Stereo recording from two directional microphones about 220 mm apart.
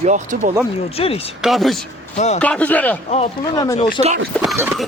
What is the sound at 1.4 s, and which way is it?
Speech, centre (ahead or behind).